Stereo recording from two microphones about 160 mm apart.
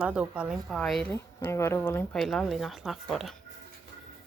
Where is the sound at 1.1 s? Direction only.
15° left (ahead or behind).